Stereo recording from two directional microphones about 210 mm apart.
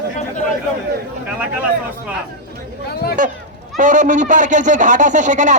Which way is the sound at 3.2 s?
40° right (ahead or behind).